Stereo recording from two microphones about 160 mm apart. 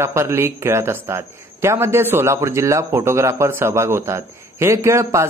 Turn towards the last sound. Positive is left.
turn(degrees=-20)  # may be behind; listen again after turning